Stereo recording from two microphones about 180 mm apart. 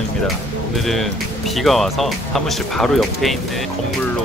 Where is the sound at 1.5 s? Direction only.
Centre (ahead or behind).